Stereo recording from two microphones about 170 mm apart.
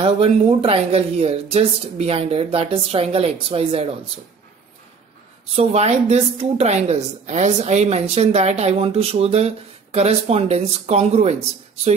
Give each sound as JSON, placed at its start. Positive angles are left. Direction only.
{"t": 0.0, "sound": "a woman's voice", "side_deg": -35}
{"t": 5.6, "sound": "a woman's voice", "side_deg": -40}